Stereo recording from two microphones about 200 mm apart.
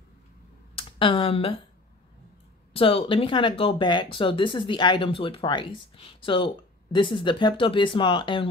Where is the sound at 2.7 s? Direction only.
25° left (ahead or behind).